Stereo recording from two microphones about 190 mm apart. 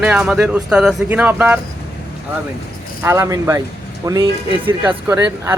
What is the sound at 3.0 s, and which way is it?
Speech, 15° right (ahead or behind).